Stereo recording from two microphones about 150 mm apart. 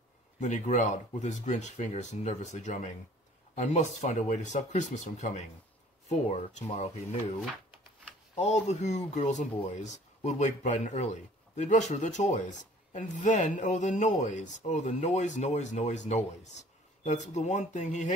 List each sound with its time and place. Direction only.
0.4 s speech: 55° left (ahead or behind)
8.4 s speech: 50° left (ahead or behind)